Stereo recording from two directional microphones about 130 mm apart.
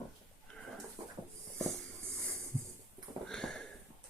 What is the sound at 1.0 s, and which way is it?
Dog, 30° right (ahead or behind).